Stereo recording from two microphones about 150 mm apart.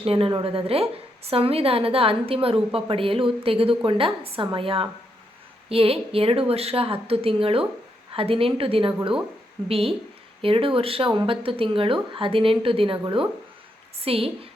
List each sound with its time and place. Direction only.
0.0 s speech: 40° right (ahead or behind)